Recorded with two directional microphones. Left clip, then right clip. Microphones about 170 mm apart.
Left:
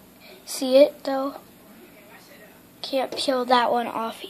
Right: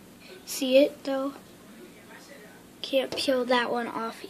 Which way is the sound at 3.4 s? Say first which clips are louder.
Left 6 dB; 15° left (ahead or behind).